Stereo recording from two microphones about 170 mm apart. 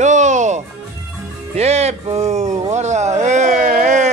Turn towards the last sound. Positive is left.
turn(degrees=-50)  # may be behind; listen again after turning